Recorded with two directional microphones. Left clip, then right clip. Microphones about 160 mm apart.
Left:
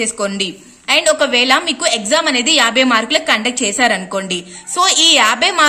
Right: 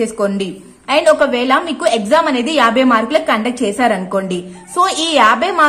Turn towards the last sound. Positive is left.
turn(degrees=15)  # may be behind; listen again after turning